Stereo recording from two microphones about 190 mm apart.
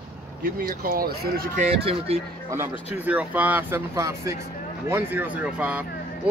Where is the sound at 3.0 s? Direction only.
10° right (ahead or behind).